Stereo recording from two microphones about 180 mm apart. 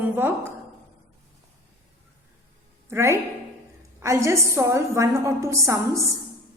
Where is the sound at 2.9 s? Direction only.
15° right (ahead or behind).